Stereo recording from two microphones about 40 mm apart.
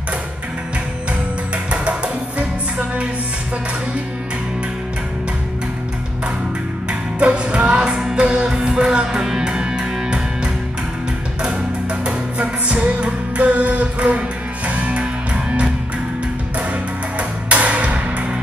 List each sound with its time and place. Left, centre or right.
1.7 s music: right
6.9 s music: right
15.3 s music: right
17.2 s music: right